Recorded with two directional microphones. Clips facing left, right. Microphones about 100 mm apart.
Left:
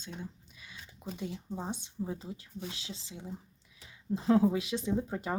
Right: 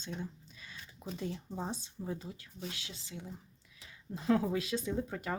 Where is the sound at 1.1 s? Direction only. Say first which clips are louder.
Even; 5° left (ahead or behind).